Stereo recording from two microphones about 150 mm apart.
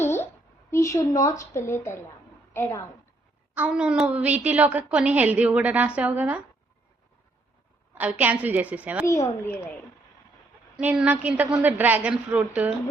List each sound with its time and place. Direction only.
0.0 s a sound: 15° left (ahead or behind)
0.7 s a woman's voice: 20° left (ahead or behind)
3.5 s a woman's voice: 10° right (ahead or behind)
7.9 s a woman's voice: 10° right (ahead or behind)
9.4 s a woman's voice: 15° left (ahead or behind)
10.8 s a woman's voice: 10° right (ahead or behind)